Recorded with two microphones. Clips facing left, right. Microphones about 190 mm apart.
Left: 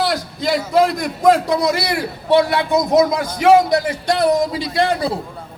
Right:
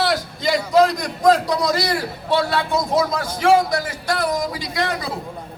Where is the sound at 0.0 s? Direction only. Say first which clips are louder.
Left 1 dB; centre (ahead or behind).